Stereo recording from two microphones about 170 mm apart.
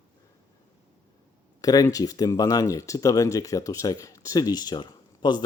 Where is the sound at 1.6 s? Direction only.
20° left (ahead or behind).